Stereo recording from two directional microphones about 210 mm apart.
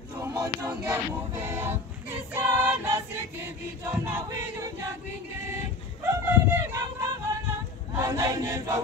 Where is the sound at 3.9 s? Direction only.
10° right (ahead or behind).